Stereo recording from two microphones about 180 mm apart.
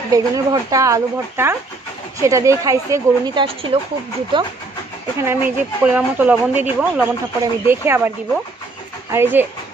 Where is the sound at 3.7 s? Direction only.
35° right (ahead or behind).